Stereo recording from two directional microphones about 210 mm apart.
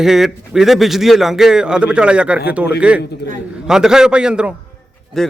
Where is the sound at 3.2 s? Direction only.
55° left (ahead or behind).